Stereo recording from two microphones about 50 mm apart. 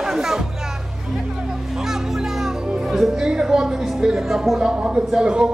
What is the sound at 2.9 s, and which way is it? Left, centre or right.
Music, centre.